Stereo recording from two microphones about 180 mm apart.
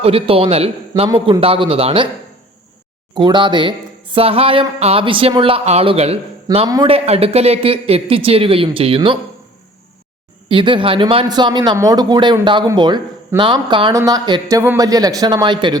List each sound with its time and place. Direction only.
0.0 s speech: 30° right (ahead or behind)
3.2 s speech: 25° right (ahead or behind)
6.7 s speech: 20° right (ahead or behind)
6.9 s speech: 35° right (ahead or behind)
10.5 s speech: 25° right (ahead or behind)